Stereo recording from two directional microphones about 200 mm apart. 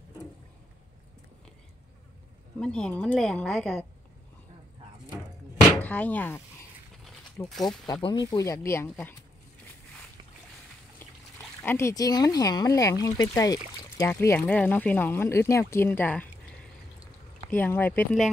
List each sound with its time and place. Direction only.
2.6 s a woman's voice: 5° left (ahead or behind)
5.7 s speech: 5° left (ahead or behind)
7.6 s speech: 20° left (ahead or behind)
11.6 s speech: 15° left (ahead or behind)
17.5 s speech: 10° left (ahead or behind)